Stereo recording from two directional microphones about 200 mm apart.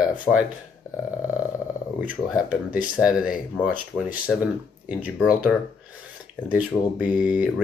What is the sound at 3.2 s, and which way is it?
Speech, 5° right (ahead or behind).